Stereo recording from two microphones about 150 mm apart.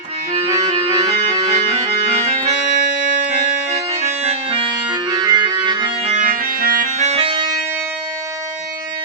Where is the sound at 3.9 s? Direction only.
45° right (ahead or behind).